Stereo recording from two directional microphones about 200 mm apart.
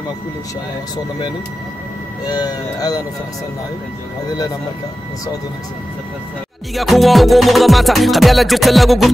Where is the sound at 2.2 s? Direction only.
20° left (ahead or behind).